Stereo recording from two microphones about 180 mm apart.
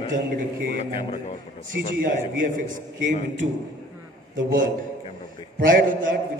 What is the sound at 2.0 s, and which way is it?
Speech, 50° right (ahead or behind).